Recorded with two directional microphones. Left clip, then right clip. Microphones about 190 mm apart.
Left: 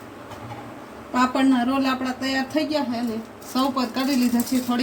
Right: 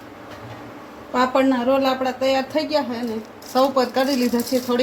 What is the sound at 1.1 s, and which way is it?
A woman's voice, 40° right (ahead or behind).